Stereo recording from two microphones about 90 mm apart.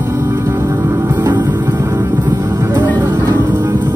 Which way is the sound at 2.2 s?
50° right (ahead or behind).